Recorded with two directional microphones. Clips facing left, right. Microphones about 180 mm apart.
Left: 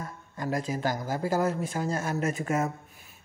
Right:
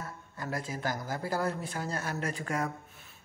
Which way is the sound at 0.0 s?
20° left (ahead or behind).